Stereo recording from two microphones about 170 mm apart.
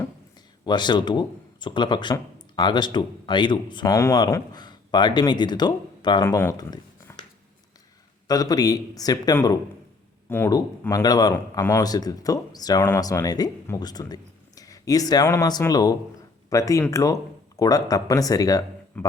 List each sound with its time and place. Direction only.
0.6 s speech: 25° left (ahead or behind)
6.2 s speech: 15° left (ahead or behind)
8.3 s speech: 20° left (ahead or behind)
19.0 s a man's voice: 10° left (ahead or behind)